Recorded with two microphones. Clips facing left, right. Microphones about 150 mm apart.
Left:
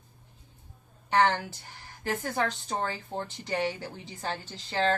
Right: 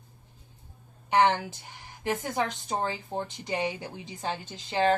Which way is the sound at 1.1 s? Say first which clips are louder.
Right 2 dB; 20° right (ahead or behind).